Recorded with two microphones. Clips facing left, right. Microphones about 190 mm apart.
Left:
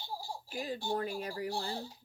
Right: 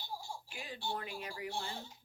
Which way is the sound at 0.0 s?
35° left (ahead or behind).